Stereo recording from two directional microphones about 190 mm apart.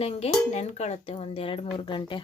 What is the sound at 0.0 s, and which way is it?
Speech, 35° left (ahead or behind).